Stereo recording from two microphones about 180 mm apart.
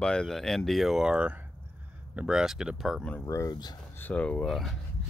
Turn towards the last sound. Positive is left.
turn(degrees=0)  # may be behind; listen again after turning